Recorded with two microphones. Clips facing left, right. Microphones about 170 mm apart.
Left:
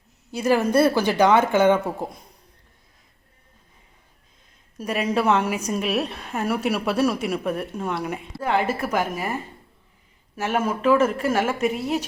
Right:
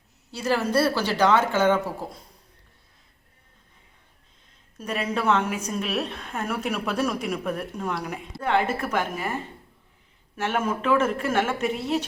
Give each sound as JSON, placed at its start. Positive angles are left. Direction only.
{"t": 0.3, "sound": "a woman's voice", "side_deg": 15}
{"t": 4.8, "sound": "a woman's voice", "side_deg": 10}
{"t": 10.3, "sound": "a woman's voice", "side_deg": 5}